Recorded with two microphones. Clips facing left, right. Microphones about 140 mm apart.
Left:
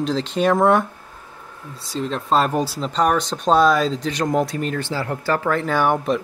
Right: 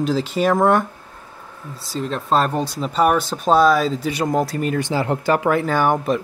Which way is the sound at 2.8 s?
5° right (ahead or behind).